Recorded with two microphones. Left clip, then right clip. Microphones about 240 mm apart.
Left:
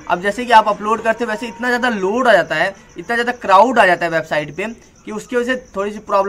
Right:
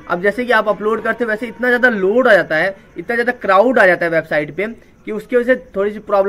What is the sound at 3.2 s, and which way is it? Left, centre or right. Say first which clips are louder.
Speech: right 4 dB; left.